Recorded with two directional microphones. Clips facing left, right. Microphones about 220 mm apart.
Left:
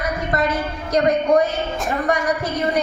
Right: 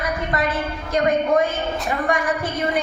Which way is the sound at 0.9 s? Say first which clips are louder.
Left 2 dB; 40° left (ahead or behind).